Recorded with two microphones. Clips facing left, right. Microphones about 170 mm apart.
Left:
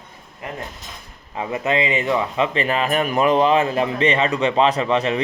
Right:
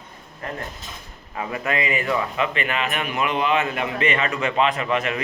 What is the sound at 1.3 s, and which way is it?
A man's voice, 20° left (ahead or behind).